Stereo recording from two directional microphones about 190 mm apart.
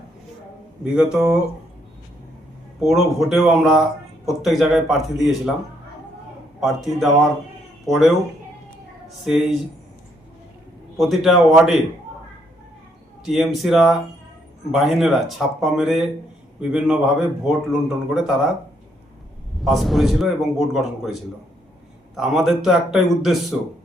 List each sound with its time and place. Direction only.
0.9 s a man's voice: 5° right (ahead or behind)
2.8 s a man's voice: centre (ahead or behind)
6.6 s a man's voice: centre (ahead or behind)
10.9 s a man's voice: centre (ahead or behind)
13.2 s a man's voice: centre (ahead or behind)
19.6 s a man's voice: centre (ahead or behind)